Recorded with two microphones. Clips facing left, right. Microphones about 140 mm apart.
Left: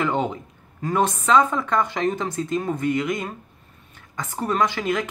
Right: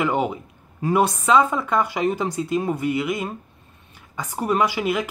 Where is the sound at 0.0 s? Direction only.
10° right (ahead or behind).